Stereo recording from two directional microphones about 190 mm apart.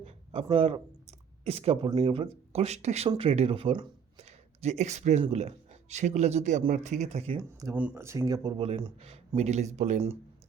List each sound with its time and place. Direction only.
0.0 s a sound: 30° right (ahead or behind)
0.5 s speech: 30° right (ahead or behind)
7.8 s speech: 10° right (ahead or behind); by 10.2 s 35° right (ahead or behind)